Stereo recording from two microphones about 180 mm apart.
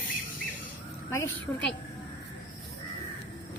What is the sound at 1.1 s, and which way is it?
Speech, 15° left (ahead or behind).